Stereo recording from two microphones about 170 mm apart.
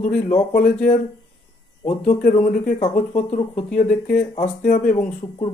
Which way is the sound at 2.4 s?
50° left (ahead or behind).